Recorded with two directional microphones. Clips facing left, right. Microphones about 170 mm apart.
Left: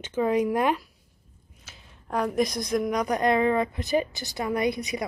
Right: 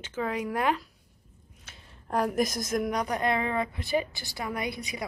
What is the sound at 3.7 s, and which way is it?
Speech, 45° left (ahead or behind).